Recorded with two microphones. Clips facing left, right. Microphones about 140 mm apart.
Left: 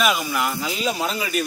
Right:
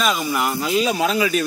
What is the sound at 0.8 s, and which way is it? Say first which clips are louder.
Speech: right 8 dB; 90° right.